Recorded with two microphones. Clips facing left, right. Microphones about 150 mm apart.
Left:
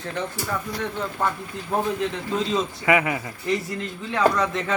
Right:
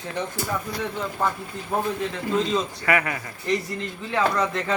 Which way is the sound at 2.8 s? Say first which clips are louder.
Left 5 dB; 20° left (ahead or behind).